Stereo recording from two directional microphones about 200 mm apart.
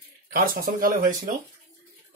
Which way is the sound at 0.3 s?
45° right (ahead or behind).